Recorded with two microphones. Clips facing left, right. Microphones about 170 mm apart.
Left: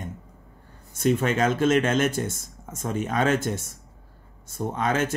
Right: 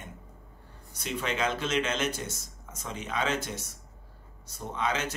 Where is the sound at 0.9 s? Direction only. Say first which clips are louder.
Left 10 dB; 50° left (ahead or behind).